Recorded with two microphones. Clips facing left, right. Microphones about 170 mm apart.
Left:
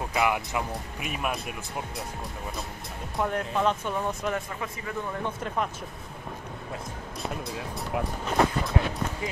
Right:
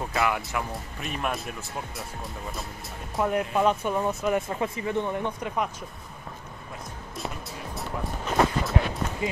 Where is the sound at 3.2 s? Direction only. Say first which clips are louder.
Right 3 dB; 10° right (ahead or behind).